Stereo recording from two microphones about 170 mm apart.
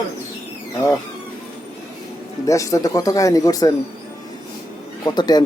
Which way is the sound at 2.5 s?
20° left (ahead or behind).